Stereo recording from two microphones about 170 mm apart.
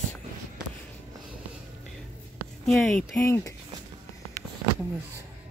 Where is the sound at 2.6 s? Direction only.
Centre (ahead or behind).